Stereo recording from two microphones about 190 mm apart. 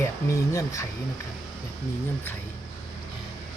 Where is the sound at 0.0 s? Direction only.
15° left (ahead or behind).